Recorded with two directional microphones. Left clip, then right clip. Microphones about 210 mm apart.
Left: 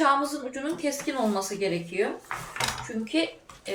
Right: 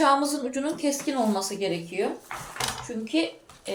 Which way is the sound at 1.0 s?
20° right (ahead or behind).